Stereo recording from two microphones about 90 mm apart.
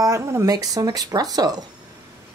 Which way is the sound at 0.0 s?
35° right (ahead or behind).